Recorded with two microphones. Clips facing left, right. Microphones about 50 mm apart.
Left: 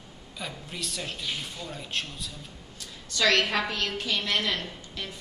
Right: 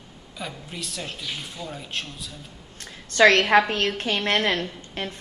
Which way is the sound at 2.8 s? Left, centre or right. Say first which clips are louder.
Right 10 dB; right.